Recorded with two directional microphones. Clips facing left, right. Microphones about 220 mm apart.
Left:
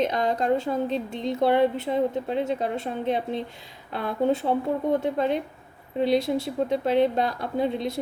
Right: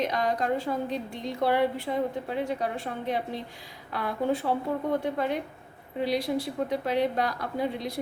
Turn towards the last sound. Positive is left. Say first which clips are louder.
# left 4 dB
turn(degrees=25)  # may be behind; listen again after turning